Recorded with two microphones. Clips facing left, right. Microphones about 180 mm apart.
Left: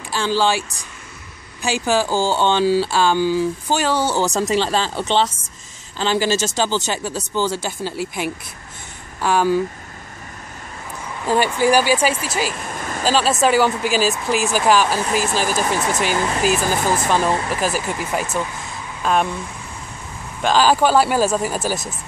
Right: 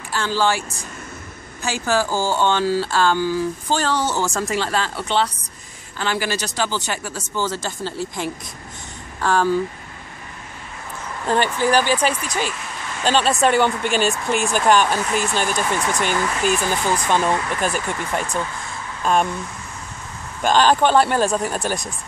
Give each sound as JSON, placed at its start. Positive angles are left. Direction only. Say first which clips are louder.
{"t": 0.1, "sound": "speech", "louder": "left 2 dB", "side_deg": 15}
{"t": 1.6, "sound": "speech", "louder": "left 2 dB", "side_deg": 15}
{"t": 11.2, "sound": "speech", "louder": "left 2 dB", "side_deg": 10}
{"t": 12.5, "sound": "vehicle", "louder": "left 4 dB", "side_deg": 45}
{"t": 13.0, "sound": "speech", "louder": "even", "side_deg": 5}
{"t": 16.2, "sound": "speech", "louder": "left 2 dB", "side_deg": 30}
{"t": 17.6, "sound": "speech", "louder": "left 1 dB", "side_deg": 5}
{"t": 20.4, "sound": "speech", "louder": "even", "side_deg": 5}